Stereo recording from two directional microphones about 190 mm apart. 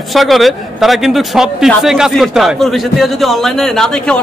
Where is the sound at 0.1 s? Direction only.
Centre (ahead or behind).